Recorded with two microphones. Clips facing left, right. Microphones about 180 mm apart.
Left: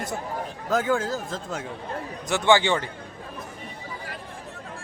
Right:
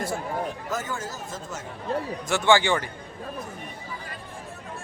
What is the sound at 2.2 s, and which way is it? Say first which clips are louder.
Speech: left 1 dB; 20° left (ahead or behind).